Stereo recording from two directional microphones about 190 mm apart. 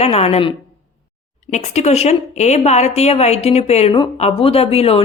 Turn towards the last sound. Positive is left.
turn(degrees=30)  # may be behind; listen again after turning